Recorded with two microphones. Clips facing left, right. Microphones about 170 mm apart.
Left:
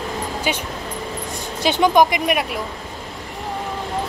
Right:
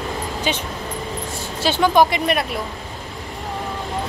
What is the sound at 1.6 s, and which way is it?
Speech, 20° left (ahead or behind).